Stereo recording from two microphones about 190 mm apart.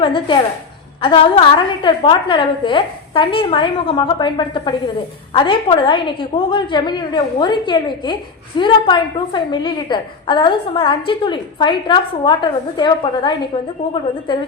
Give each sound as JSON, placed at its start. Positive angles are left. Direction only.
{"t": 0.0, "sound": "a woman's voice", "side_deg": 25}